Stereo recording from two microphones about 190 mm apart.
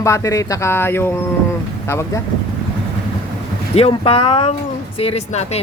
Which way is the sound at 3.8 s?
30° left (ahead or behind).